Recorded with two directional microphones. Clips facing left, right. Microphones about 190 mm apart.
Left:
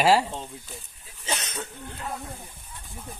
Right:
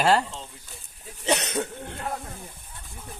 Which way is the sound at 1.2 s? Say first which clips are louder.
Right 8 dB; 65° right (ahead or behind).